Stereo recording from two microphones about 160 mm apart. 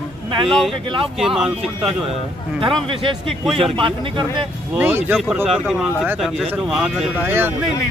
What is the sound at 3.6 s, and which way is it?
Speech, 35° right (ahead or behind).